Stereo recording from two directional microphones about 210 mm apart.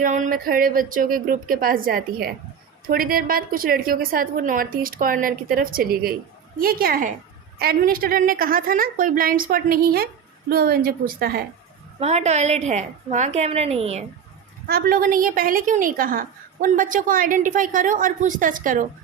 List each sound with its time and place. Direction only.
0.0 s a woman's voice: 40° right (ahead or behind)
11.9 s a woman's voice: 30° right (ahead or behind)
14.7 s a woman's voice: 45° right (ahead or behind)